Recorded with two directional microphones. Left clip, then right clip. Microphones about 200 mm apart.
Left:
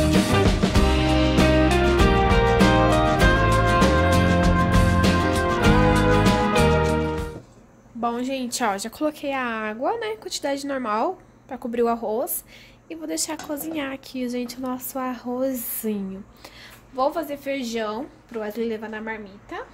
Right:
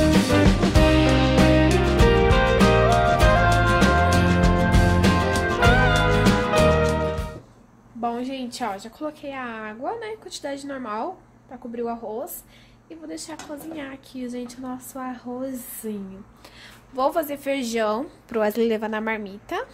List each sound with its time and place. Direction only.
0.0 s music: centre (ahead or behind)
8.0 s a sound: 10° left (ahead or behind)
8.5 s a woman's voice: 30° left (ahead or behind)
11.5 s a woman's voice: 35° left (ahead or behind)
16.9 s a woman's voice: 15° right (ahead or behind)
18.3 s a woman's voice: 35° right (ahead or behind)